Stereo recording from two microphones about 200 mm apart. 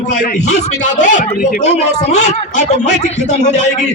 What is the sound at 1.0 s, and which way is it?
Speech, 40° left (ahead or behind).